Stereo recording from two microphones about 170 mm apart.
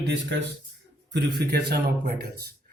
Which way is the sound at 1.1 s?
80° right.